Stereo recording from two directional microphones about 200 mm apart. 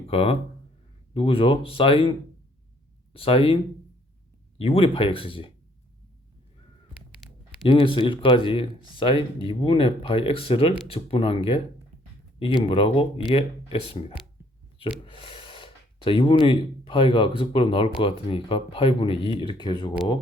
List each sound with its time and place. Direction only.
0.1 s speech: 30° left (ahead or behind)
7.6 s speech: 25° left (ahead or behind)